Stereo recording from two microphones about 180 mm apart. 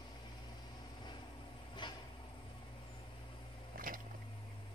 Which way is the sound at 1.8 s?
25° left (ahead or behind).